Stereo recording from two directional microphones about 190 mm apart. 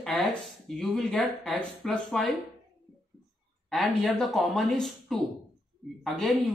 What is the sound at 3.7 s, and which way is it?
Speech, centre (ahead or behind).